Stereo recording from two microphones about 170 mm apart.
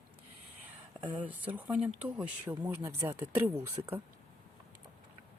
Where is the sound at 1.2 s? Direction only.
10° right (ahead or behind).